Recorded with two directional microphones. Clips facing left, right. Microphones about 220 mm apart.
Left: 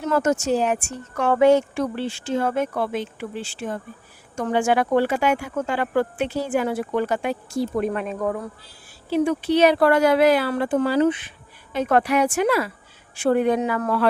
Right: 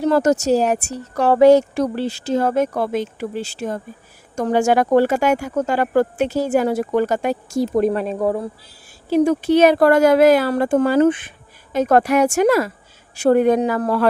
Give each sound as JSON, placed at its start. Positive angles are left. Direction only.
{"t": 0.0, "sound": "speech", "side_deg": -35}
{"t": 9.0, "sound": "speech", "side_deg": -40}